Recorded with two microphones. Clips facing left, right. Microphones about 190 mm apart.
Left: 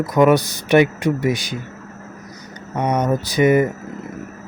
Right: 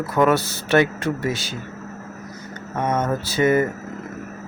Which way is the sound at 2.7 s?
15° left (ahead or behind).